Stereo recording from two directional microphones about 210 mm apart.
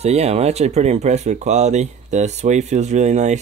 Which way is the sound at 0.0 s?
30° right (ahead or behind).